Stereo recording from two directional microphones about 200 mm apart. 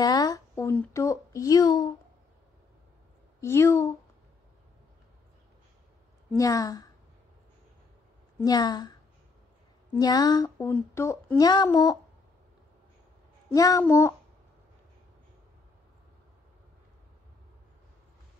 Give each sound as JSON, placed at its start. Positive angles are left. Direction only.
{"t": 0.0, "sound": "speech", "side_deg": 20}
{"t": 3.3, "sound": "female singing", "side_deg": 15}
{"t": 6.3, "sound": "female singing", "side_deg": 15}
{"t": 8.4, "sound": "a woman's voice", "side_deg": 20}
{"t": 9.9, "sound": "a woman's voice", "side_deg": 20}
{"t": 10.7, "sound": "female singing", "side_deg": 10}
{"t": 13.5, "sound": "female singing", "side_deg": 15}